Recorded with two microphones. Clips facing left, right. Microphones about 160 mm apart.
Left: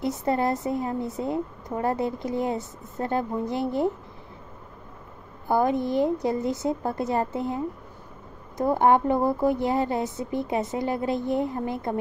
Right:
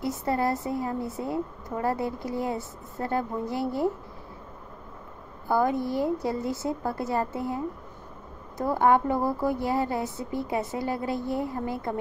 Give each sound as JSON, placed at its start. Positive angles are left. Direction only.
{"t": 0.0, "sound": "a woman's voice", "side_deg": 20}
{"t": 5.5, "sound": "a woman's voice", "side_deg": 20}